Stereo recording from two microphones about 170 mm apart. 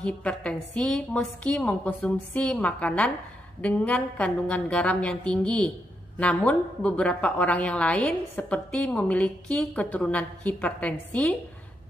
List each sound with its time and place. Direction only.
0.0 s a woman's voice: 5° left (ahead or behind)